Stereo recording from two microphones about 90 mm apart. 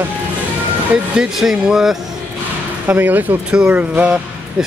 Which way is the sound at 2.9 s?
20° right (ahead or behind).